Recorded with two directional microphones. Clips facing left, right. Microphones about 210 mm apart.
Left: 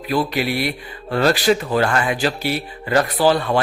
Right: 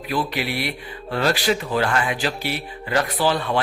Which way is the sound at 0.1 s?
40° left (ahead or behind).